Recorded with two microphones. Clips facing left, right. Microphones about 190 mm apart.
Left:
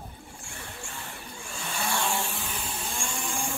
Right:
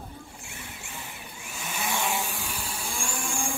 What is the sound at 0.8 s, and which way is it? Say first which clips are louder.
Vehicle: left 1 dB; 15° right (ahead or behind).